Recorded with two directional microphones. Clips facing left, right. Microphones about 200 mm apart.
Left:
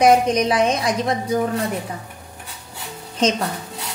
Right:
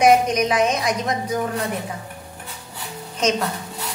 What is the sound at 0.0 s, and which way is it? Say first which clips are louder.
Speech: left 1 dB; 30° left (ahead or behind).